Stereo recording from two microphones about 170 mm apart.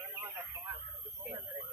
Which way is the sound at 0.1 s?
25° right (ahead or behind).